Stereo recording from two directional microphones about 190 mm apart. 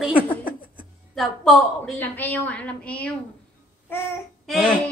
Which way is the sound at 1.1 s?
Centre (ahead or behind).